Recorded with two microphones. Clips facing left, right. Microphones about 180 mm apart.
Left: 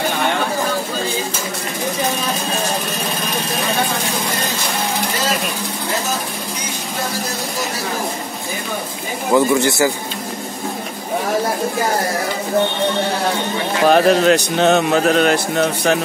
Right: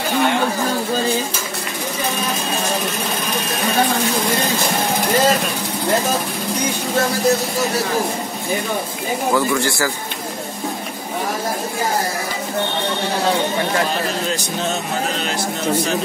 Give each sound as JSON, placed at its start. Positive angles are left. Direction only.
{"t": 9.3, "sound": "speech", "side_deg": 20}
{"t": 13.8, "sound": "a man's voice", "side_deg": 65}